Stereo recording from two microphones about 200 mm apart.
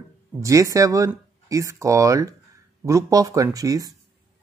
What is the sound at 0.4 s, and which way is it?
Speech, 15° right (ahead or behind).